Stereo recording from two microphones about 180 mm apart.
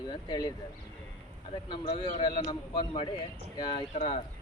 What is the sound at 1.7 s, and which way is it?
Speech, 30° left (ahead or behind).